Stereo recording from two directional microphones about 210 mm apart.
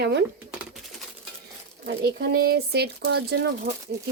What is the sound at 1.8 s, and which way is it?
Speech, 50° right (ahead or behind).